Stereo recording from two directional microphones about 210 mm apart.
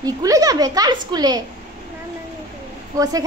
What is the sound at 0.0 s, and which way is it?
A child's voice, 15° right (ahead or behind).